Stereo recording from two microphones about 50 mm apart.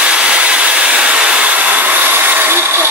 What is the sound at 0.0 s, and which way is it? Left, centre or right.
Hair dryer, centre.